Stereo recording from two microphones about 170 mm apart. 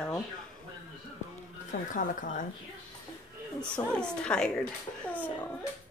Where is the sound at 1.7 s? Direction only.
55° left (ahead or behind).